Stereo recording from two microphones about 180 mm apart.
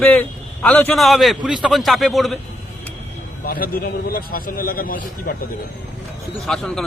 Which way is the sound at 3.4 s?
55° left (ahead or behind).